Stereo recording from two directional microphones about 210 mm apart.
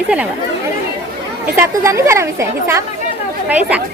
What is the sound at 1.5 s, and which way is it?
A woman's voice, 15° right (ahead or behind).